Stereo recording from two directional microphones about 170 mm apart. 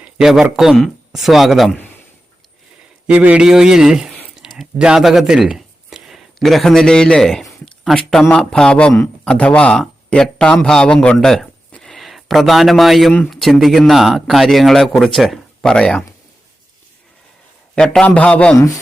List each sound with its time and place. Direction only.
0.0 s a sound: 5° right (ahead or behind)
0.4 s speech: 5° right (ahead or behind)
3.1 s speech: 10° right (ahead or behind)
17.7 s a man's voice: 5° left (ahead or behind)
18.5 s speech: 20° left (ahead or behind)